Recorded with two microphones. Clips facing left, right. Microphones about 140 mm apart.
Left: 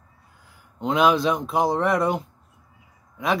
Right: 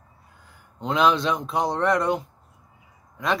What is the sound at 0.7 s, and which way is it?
Speech, centre (ahead or behind).